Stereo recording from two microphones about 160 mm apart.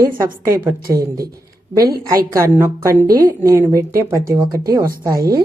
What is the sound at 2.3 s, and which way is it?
Speech, 20° right (ahead or behind).